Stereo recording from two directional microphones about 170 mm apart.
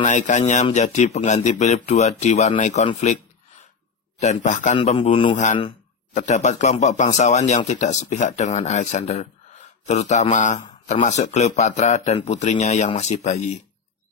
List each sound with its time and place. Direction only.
0.0 s speech: 45° left (ahead or behind)
4.2 s speech: 45° left (ahead or behind)
5.0 s speech: 30° left (ahead or behind)
6.1 s speech: 45° left (ahead or behind)